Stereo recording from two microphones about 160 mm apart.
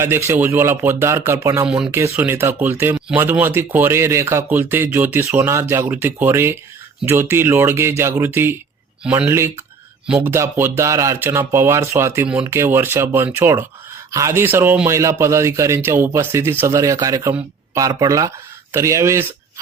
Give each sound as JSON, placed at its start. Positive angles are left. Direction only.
{"t": 0.0, "sound": "speech", "side_deg": -15}
{"t": 1.6, "sound": "speech", "side_deg": -5}
{"t": 2.0, "sound": "speech", "side_deg": -15}